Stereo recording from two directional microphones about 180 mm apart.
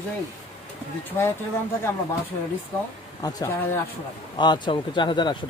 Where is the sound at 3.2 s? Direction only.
20° left (ahead or behind).